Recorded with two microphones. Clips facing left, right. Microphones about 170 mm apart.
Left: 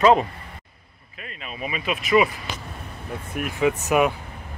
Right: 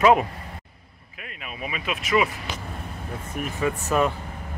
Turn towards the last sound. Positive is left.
turn(degrees=15)  # may be behind; listen again after turning